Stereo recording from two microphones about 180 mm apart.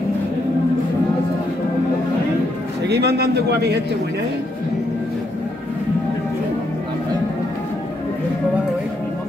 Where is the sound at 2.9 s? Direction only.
65° right (ahead or behind).